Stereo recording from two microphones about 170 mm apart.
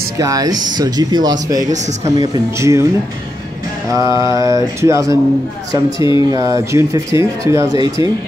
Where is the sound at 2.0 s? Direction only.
20° right (ahead or behind).